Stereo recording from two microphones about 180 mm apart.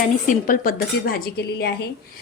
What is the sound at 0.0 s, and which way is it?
Speech, 50° left (ahead or behind).